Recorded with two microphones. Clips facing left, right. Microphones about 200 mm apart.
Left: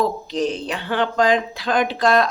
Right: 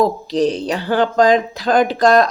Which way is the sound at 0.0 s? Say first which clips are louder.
Right 5 dB; 35° right (ahead or behind).